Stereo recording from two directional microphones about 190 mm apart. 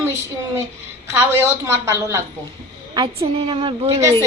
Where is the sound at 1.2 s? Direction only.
10° right (ahead or behind).